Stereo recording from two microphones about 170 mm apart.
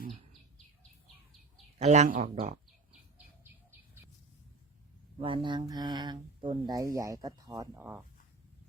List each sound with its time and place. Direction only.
1.8 s speech: 45° right (ahead or behind)
5.2 s speech: 30° right (ahead or behind); by 8.0 s 10° right (ahead or behind)